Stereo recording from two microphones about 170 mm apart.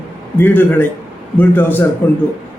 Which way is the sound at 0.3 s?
10° left (ahead or behind).